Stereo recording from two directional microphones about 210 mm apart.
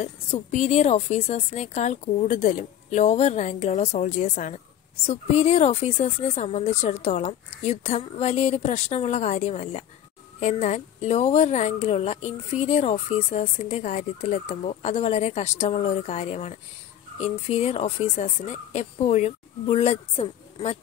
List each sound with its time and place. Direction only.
0.0 s a woman's voice: 35° left (ahead or behind)